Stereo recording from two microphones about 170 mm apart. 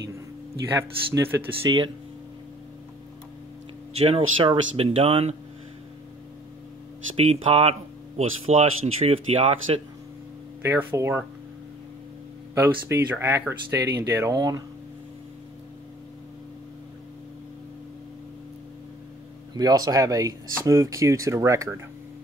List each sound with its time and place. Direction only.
0.7 s speech: 15° right (ahead or behind)
3.9 s speech: 35° right (ahead or behind)
7.2 s speech: 35° right (ahead or behind)
10.6 s speech: 10° right (ahead or behind)
12.5 s speech: 15° right (ahead or behind)
19.5 s speech: 25° right (ahead or behind)